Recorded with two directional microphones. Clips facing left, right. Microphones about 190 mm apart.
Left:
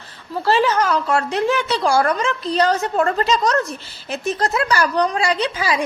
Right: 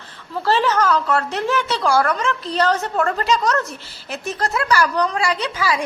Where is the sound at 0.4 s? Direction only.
10° left (ahead or behind).